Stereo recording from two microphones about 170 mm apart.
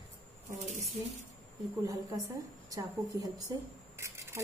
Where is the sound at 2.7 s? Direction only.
20° right (ahead or behind).